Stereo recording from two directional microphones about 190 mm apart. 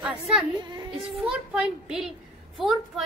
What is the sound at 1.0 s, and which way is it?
Speech, 5° right (ahead or behind).